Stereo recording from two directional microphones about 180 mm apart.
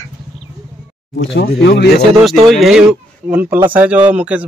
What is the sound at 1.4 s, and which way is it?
Speech, 65° left (ahead or behind).